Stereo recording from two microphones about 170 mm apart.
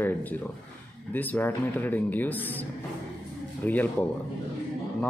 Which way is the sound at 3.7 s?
10° left (ahead or behind).